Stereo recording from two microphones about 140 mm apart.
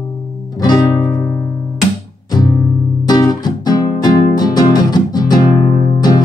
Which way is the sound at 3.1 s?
30° left (ahead or behind).